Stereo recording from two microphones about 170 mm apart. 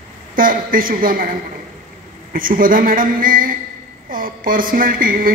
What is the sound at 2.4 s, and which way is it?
A woman's voice, 55° right (ahead or behind).